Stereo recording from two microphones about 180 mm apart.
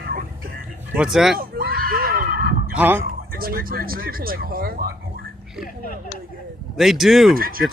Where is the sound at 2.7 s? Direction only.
10° right (ahead or behind).